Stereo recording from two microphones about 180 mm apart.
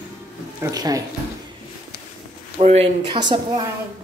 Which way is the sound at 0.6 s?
20° right (ahead or behind).